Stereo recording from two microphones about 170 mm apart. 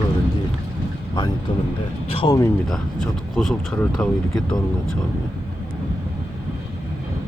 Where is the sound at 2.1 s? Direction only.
30° left (ahead or behind).